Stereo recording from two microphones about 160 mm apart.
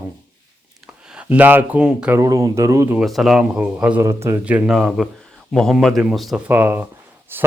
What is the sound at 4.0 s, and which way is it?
A man's voice, 20° right (ahead or behind).